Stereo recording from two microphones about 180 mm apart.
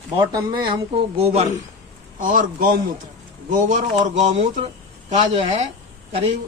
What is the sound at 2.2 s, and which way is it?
A man's voice, 50° right (ahead or behind).